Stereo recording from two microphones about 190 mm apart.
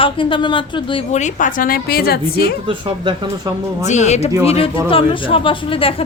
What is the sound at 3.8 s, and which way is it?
A woman's voice, 35° left (ahead or behind).